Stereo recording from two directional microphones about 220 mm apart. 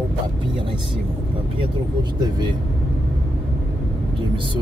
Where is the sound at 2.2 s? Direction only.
20° right (ahead or behind).